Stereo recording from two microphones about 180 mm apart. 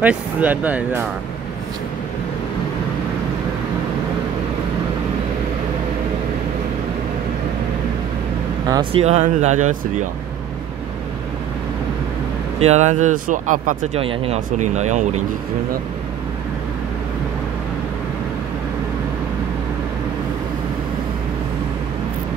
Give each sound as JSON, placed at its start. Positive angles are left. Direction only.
{"t": 0.0, "sound": "speech", "side_deg": -10}
{"t": 8.9, "sound": "speech", "side_deg": -40}
{"t": 12.5, "sound": "speech", "side_deg": -40}
{"t": 14.0, "sound": "speech", "side_deg": -35}